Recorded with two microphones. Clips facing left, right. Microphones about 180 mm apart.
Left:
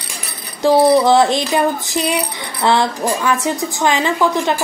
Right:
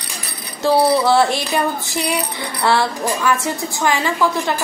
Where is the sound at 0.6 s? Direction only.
15° left (ahead or behind).